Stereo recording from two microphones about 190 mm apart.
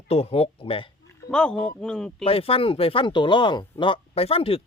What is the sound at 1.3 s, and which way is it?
Speech, 5° left (ahead or behind).